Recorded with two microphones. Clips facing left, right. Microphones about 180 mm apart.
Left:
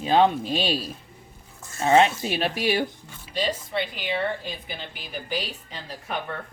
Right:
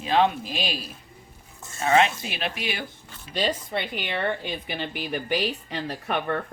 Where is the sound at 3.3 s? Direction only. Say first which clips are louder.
Even; 55° right (ahead or behind).